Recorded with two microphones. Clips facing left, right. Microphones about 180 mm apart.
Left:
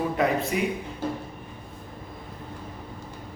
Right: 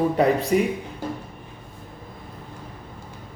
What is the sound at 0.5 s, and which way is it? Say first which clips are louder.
Speech: right 6 dB; 40° right (ahead or behind).